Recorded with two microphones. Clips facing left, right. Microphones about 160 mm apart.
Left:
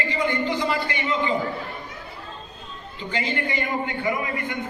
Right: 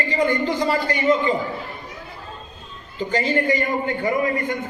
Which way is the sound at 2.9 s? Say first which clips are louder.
Right 7 dB; 40° right (ahead or behind).